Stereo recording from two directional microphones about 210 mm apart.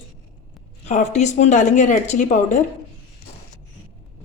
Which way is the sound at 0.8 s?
30° left (ahead or behind).